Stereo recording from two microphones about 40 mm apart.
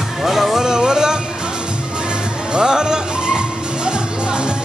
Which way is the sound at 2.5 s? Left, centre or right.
Centre.